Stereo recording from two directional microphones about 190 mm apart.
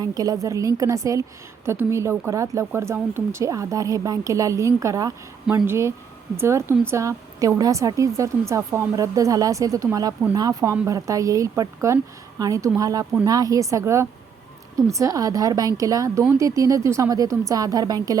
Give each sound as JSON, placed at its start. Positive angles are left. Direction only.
{"t": 0.0, "sound": "a woman's voice", "side_deg": -20}